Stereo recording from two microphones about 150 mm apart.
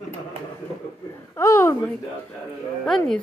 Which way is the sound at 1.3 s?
20° left (ahead or behind).